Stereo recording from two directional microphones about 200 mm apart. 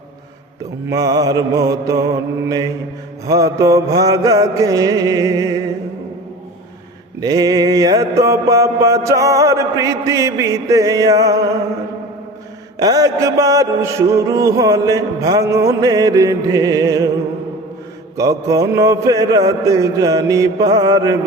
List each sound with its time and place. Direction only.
0.9 s mantra: 20° right (ahead or behind)
7.2 s mantra: 20° right (ahead or behind)
12.8 s mantra: 20° right (ahead or behind)
18.2 s mantra: 15° right (ahead or behind)